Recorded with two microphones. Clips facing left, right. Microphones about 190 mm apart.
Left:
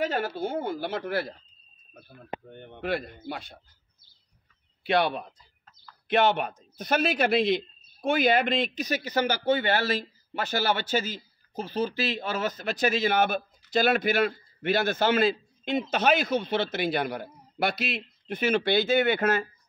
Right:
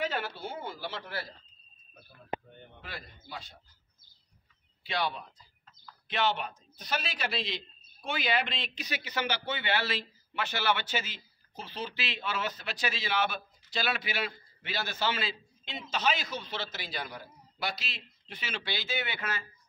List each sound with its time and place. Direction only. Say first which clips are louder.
0.0 s speech: left 6 dB; 45° left (ahead or behind); by 1.3 s 60° left (ahead or behind)
2.5 s a man's voice: left 15 dB; 65° left (ahead or behind)
4.8 s a man's voice: left 9 dB; 60° left (ahead or behind)